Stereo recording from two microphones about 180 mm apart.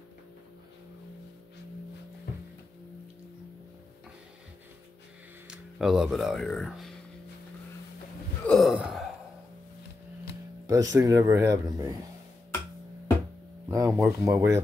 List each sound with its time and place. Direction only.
5.5 s speech: 5° right (ahead or behind)
8.5 s gasp: centre (ahead or behind)
10.7 s speech: 20° right (ahead or behind)
13.7 s speech: 20° right (ahead or behind)